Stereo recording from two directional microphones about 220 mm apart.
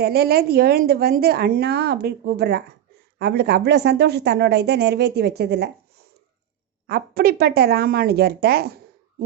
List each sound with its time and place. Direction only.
0.0 s a woman's voice: 45° right (ahead or behind)
6.8 s speech: 45° right (ahead or behind)